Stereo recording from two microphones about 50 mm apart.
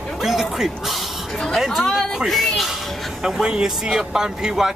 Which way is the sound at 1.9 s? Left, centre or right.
Centre.